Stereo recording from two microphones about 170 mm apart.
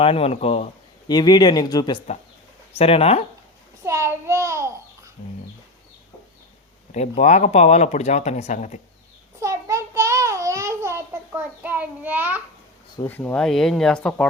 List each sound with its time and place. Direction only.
0.0 s speech: 35° left (ahead or behind)
1.0 s speech: 25° left (ahead or behind)
2.7 s speech: 35° left (ahead or behind)
3.8 s a sound: 15° right (ahead or behind)
6.9 s speech: 40° left (ahead or behind)
9.4 s child singing: 15° right (ahead or behind)
13.1 s speech: 10° left (ahead or behind)